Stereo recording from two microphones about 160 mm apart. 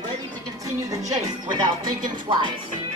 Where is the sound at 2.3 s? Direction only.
30° right (ahead or behind).